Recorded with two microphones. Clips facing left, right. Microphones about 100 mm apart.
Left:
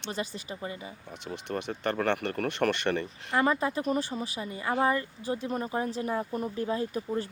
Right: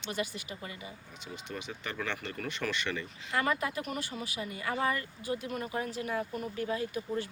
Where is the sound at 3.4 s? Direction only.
30° left (ahead or behind).